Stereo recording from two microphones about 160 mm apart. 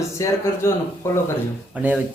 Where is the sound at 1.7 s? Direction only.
10° right (ahead or behind).